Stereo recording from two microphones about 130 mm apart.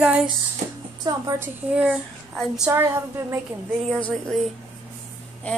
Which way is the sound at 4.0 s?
5° left (ahead or behind).